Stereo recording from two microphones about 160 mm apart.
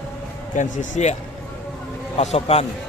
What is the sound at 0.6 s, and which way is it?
Speech, 50° left (ahead or behind).